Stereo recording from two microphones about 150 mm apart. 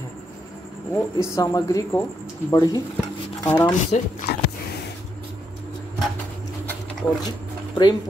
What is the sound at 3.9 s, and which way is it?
Speech, 50° left (ahead or behind).